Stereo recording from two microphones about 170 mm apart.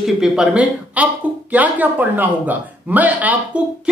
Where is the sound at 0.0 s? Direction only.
5° right (ahead or behind).